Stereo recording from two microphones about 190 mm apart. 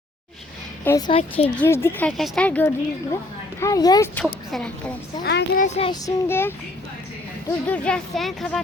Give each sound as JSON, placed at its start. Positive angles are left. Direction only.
{"t": 0.9, "sound": "speech", "side_deg": 20}
{"t": 1.5, "sound": "speech", "side_deg": 10}
{"t": 3.6, "sound": "speech", "side_deg": 20}
{"t": 4.1, "sound": "speech", "side_deg": 5}
{"t": 5.2, "sound": "a child's voice", "side_deg": 65}
{"t": 5.5, "sound": "child singing", "side_deg": 35}
{"t": 5.9, "sound": "speech", "side_deg": 15}
{"t": 7.7, "sound": "speech", "side_deg": 5}